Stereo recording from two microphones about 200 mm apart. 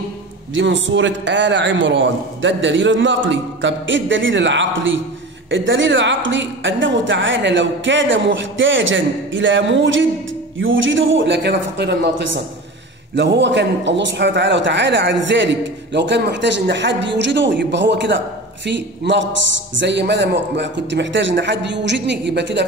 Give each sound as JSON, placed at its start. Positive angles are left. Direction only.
{"t": 0.6, "sound": "a woman's voice", "side_deg": -70}